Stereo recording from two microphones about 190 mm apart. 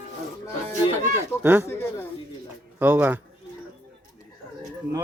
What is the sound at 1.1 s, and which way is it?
Speech, 10° right (ahead or behind).